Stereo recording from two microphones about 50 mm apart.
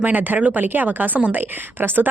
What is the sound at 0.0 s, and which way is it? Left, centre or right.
A woman's voice, right.